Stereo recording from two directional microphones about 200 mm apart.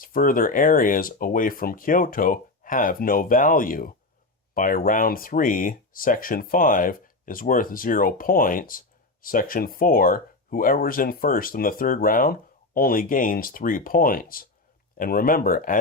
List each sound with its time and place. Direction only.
0.0 s speech: 45° left (ahead or behind)